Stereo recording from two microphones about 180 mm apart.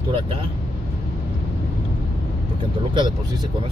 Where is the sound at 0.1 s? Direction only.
30° right (ahead or behind).